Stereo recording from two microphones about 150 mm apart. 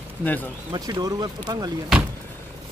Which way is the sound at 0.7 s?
25° right (ahead or behind).